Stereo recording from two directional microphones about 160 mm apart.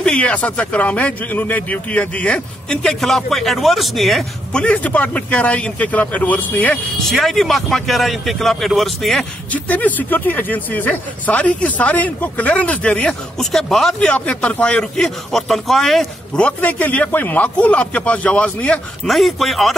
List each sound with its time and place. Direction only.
0.0 s speech: 5° left (ahead or behind)